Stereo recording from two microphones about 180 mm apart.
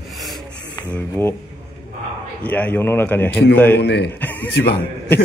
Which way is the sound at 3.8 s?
70° left (ahead or behind).